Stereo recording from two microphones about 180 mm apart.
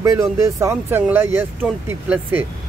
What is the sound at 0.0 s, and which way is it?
Speech, 15° right (ahead or behind).